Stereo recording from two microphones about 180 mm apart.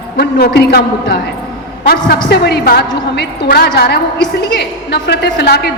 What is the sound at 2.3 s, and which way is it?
A woman's voice, 65° left (ahead or behind).